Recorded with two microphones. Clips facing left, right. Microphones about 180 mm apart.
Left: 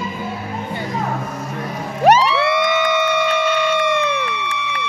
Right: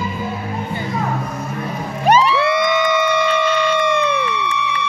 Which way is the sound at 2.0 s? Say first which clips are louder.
Left 1 dB; 70° left (ahead or behind).